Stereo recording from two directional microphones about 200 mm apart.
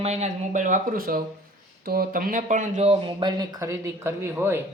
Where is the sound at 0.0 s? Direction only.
35° right (ahead or behind).